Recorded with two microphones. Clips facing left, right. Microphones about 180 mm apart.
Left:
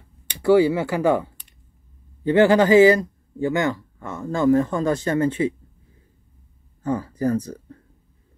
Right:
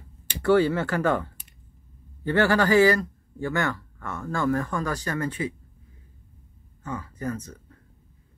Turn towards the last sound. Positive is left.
turn(degrees=35)  # may be behind; listen again after turning